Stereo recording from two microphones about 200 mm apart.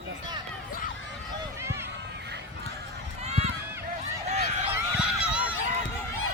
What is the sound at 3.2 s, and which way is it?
Run, 35° right (ahead or behind).